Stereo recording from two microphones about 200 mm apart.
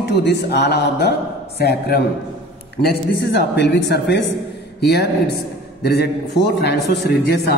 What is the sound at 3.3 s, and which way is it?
A man's voice, 60° left (ahead or behind).